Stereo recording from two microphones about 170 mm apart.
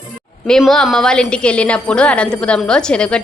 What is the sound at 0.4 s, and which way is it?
Speech, 5° left (ahead or behind).